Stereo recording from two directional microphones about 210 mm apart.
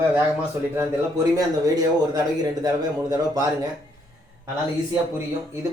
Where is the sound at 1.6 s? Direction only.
20° right (ahead or behind).